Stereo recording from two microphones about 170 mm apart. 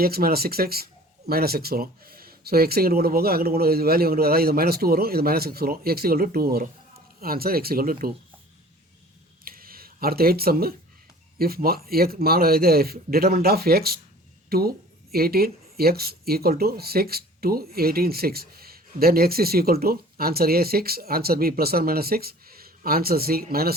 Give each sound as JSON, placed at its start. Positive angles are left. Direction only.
{"t": 0.0, "sound": "speech", "side_deg": -60}
{"t": 9.4, "sound": "a sound", "side_deg": -60}
{"t": 11.3, "sound": "speech", "side_deg": -60}